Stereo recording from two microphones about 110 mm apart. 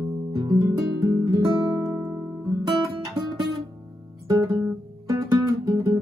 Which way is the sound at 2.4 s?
35° right (ahead or behind).